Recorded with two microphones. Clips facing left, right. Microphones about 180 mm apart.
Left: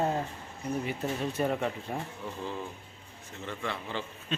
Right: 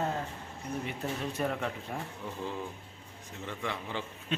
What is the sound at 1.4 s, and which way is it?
Speech, 5° left (ahead or behind).